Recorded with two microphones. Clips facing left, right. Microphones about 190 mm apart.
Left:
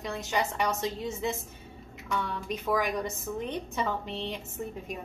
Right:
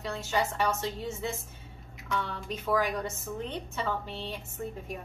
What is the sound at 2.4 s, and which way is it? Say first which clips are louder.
A woman's voice: right 1 dB; 15° left (ahead or behind).